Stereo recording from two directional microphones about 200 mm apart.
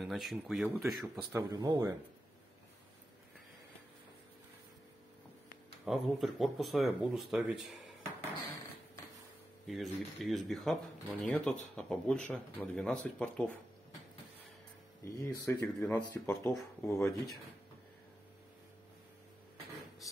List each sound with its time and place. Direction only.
0.0 s speech: centre (ahead or behind)
1.3 s speech: 15° right (ahead or behind)
5.9 s speech: centre (ahead or behind)
9.7 s speech: centre (ahead or behind)
15.0 s speech: 15° left (ahead or behind)